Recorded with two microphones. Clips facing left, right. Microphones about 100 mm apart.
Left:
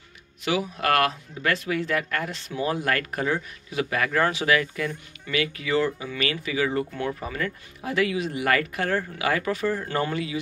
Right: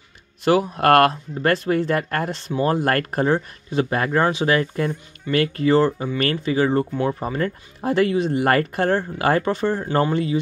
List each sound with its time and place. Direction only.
0.5 s speech: 50° right (ahead or behind); by 2.7 s 35° right (ahead or behind)
2.7 s speech: 45° right (ahead or behind)
4.2 s speech: 20° right (ahead or behind)
4.5 s speech: 35° right (ahead or behind)